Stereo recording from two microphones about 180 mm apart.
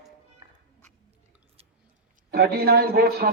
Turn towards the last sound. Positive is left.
turn(degrees=-60)  # may be behind; listen again after turning